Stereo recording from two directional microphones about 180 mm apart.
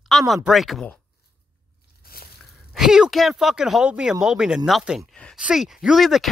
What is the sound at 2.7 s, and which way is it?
Speech, 5° right (ahead or behind).